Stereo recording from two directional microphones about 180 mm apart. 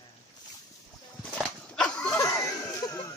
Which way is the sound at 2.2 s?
15° left (ahead or behind).